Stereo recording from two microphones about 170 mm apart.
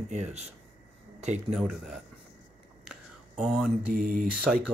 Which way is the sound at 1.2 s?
40° right (ahead or behind).